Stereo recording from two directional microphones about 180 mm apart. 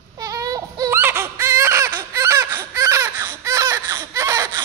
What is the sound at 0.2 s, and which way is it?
Baby cry, 20° right (ahead or behind).